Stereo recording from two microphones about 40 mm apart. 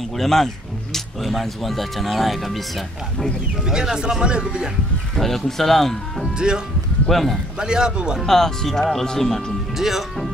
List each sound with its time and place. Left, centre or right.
0.2 s speech: centre
3.7 s speech: centre
5.1 s speech: centre
6.3 s speech: right
7.1 s speech: centre
7.5 s speech: centre
8.2 s speech: centre
9.8 s speech: centre